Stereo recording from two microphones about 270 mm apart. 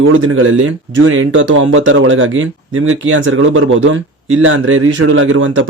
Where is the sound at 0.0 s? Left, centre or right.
Right.